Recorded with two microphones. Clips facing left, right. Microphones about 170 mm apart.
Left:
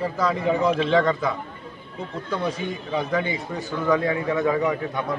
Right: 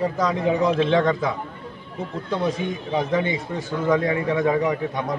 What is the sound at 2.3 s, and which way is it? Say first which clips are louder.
Speech: right 3 dB; 20° right (ahead or behind).